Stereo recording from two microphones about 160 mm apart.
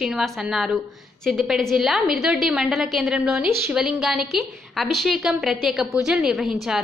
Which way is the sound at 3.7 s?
5° right (ahead or behind).